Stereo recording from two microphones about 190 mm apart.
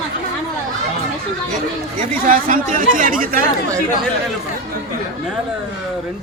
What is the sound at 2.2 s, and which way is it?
Speech, 45° right (ahead or behind).